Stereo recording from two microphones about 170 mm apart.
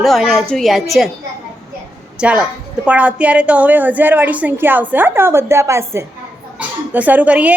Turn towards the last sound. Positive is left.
turn(degrees=-10)  # may be behind; listen again after turning